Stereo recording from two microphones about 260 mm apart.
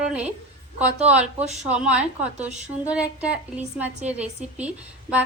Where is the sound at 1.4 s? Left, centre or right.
Right.